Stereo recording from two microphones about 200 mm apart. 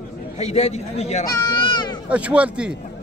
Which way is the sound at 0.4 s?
35° left (ahead or behind).